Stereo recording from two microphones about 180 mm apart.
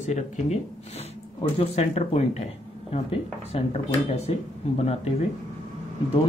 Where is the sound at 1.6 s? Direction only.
35° left (ahead or behind).